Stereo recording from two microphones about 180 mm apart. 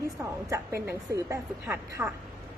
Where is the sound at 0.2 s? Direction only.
10° right (ahead or behind).